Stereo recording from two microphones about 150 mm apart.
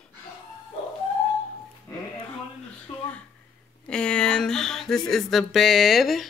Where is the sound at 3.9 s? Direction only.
5° left (ahead or behind).